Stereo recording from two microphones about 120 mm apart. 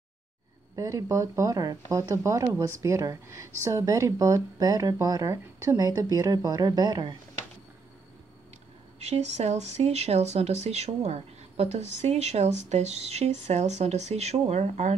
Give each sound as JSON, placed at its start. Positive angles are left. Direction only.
{"t": 0.7, "sound": "speech", "side_deg": -25}
{"t": 9.0, "sound": "speech", "side_deg": -65}